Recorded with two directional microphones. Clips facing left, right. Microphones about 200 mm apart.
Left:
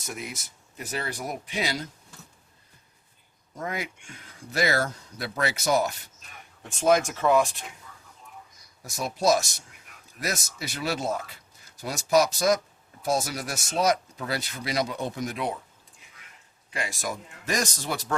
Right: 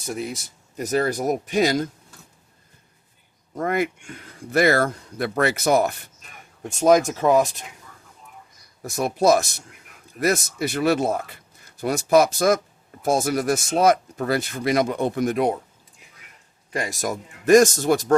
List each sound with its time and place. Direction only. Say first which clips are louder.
0.0 s speech: right 8 dB; 30° right (ahead or behind)
3.5 s speech: right 10 dB; 60° right (ahead or behind)
6.6 s speech: right 5 dB; 40° right (ahead or behind)
8.8 s speech: right 6 dB; 55° right (ahead or behind)
16.7 s speech: right 6 dB; 40° right (ahead or behind)